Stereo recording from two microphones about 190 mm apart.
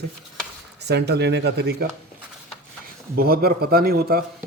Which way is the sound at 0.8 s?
60° right (ahead or behind).